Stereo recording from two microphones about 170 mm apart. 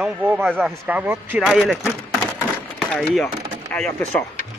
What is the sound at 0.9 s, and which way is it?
Speech, 10° right (ahead or behind).